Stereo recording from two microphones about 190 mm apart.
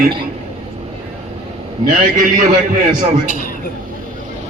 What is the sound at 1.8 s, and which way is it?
Speech, 45° right (ahead or behind).